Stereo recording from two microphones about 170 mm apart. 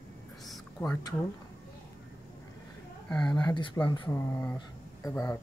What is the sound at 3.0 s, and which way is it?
Speech, 5° left (ahead or behind).